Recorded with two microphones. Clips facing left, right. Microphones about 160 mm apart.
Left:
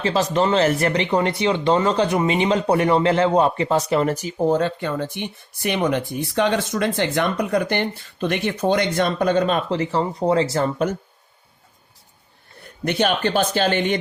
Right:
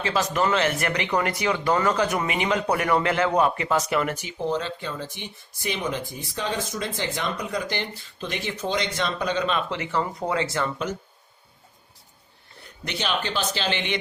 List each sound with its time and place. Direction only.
0.0 s speech: 30° left (ahead or behind)
12.8 s speech: 55° left (ahead or behind)